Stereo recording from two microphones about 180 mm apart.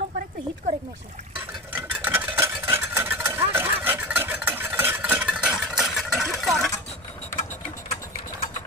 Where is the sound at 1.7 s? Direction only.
10° right (ahead or behind).